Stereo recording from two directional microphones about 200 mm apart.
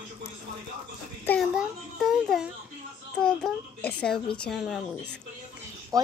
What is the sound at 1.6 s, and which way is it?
A child's voice, centre (ahead or behind).